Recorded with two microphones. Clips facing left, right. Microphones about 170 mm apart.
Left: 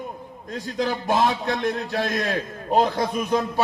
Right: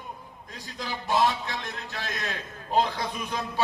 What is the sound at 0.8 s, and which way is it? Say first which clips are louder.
A man's voice: left 4 dB; 55° left (ahead or behind).